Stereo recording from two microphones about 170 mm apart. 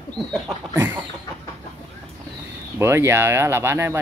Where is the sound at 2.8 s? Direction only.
15° right (ahead or behind).